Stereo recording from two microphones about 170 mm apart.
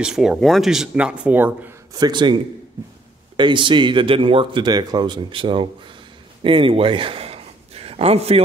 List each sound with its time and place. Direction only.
0.0 s speech: 5° right (ahead or behind)
2.0 s speech: 25° right (ahead or behind)
3.3 s speech: 30° right (ahead or behind)
6.4 s a sound: 30° right (ahead or behind)